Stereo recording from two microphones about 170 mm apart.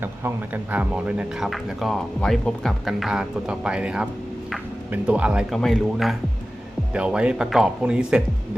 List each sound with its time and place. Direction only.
0.0 s speech: 15° right (ahead or behind)